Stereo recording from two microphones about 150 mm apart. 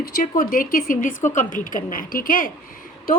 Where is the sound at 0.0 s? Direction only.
65° left (ahead or behind).